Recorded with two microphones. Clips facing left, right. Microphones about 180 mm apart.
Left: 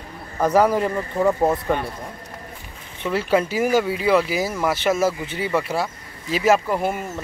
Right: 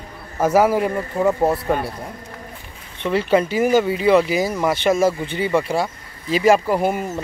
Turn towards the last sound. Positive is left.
turn(degrees=0)  # may be behind; listen again after turning